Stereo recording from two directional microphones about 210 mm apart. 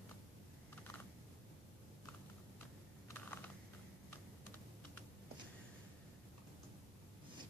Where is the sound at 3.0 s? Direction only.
10° left (ahead or behind).